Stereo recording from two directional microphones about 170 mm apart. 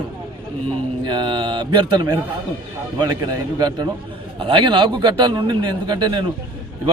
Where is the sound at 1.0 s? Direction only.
25° right (ahead or behind).